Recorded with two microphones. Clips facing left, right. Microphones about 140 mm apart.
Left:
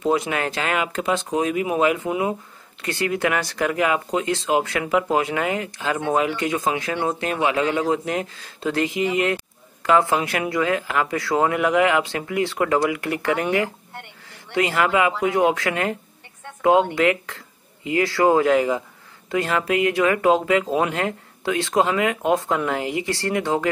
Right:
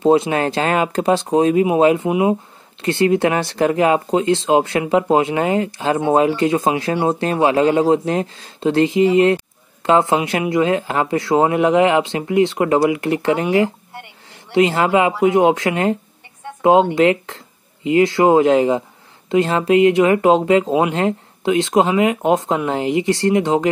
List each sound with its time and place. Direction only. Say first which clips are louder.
0.0 s speech: right 7 dB; 30° right (ahead or behind)